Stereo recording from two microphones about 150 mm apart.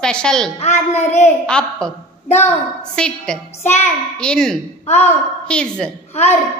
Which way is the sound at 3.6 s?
50° left (ahead or behind).